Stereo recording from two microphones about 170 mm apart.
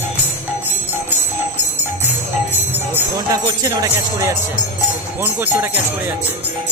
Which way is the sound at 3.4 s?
20° right (ahead or behind).